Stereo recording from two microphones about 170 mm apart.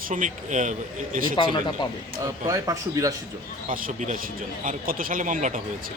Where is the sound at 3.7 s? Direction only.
50° right (ahead or behind).